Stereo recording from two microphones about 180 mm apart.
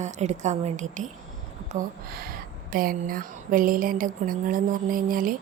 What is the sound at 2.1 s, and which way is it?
Speech, 55° right (ahead or behind).